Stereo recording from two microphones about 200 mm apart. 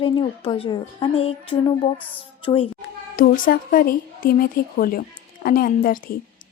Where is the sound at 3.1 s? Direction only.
45° left (ahead or behind).